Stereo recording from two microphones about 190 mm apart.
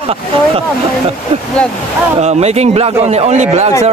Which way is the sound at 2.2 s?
35° right (ahead or behind).